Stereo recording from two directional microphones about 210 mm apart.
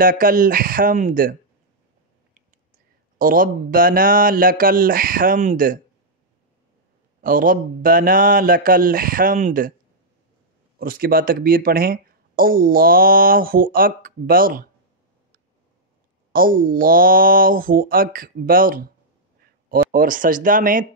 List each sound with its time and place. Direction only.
0.0 s speech: 40° right (ahead or behind)
3.2 s speech: 40° right (ahead or behind)
7.2 s speech: 40° right (ahead or behind)
10.8 s speech: 45° right (ahead or behind)
16.3 s speech: 40° right (ahead or behind)